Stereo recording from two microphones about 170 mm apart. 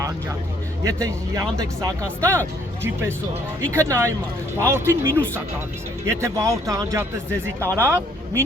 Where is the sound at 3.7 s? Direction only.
15° right (ahead or behind).